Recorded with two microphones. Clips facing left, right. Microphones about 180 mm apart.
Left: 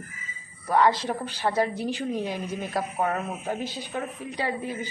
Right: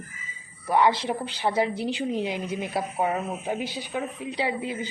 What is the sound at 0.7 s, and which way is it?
A woman's voice, 15° right (ahead or behind).